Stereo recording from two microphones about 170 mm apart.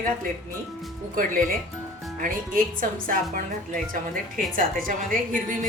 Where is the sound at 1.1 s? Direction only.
55° right (ahead or behind).